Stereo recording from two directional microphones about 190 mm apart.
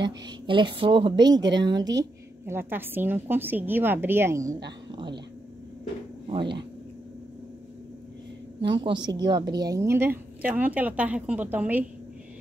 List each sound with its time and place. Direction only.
0.0 s a woman's voice: 25° right (ahead or behind)
4.6 s a sound: 25° right (ahead or behind)
6.2 s speech: 25° right (ahead or behind)
8.5 s a woman's voice: 70° right (ahead or behind)
8.8 s a woman's voice: 25° right (ahead or behind)